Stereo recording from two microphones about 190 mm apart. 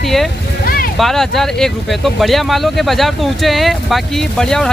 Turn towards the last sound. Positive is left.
turn(degrees=5)  # may be behind; listen again after turning